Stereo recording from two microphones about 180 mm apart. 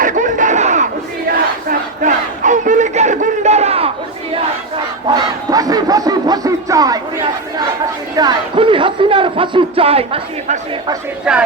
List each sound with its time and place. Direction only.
0.0 s a sound: 45° right (ahead or behind)
2.0 s battle cry: 45° right (ahead or behind)
5.0 s crowd: 20° right (ahead or behind)
8.1 s speech: 25° right (ahead or behind)
11.3 s speech: 5° right (ahead or behind)